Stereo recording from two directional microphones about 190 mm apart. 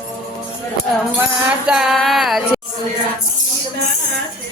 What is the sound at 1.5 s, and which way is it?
Music, 5° right (ahead or behind).